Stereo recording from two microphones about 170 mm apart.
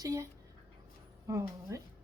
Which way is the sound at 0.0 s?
20° right (ahead or behind).